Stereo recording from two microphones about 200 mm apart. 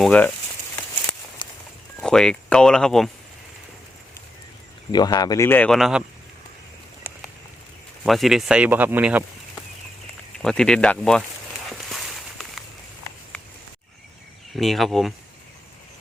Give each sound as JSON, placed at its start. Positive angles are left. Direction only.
{"t": 0.0, "sound": "speech", "side_deg": 5}
{"t": 1.4, "sound": "walk", "side_deg": 25}
{"t": 2.0, "sound": "speech", "side_deg": 5}
{"t": 4.9, "sound": "speech", "side_deg": 20}
{"t": 8.0, "sound": "speech", "side_deg": 0}
{"t": 10.3, "sound": "speech", "side_deg": 5}
{"t": 11.7, "sound": "a sound", "side_deg": 0}
{"t": 14.5, "sound": "speech", "side_deg": 0}